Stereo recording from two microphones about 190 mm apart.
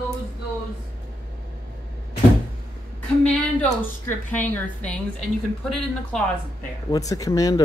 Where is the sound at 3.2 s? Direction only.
10° left (ahead or behind).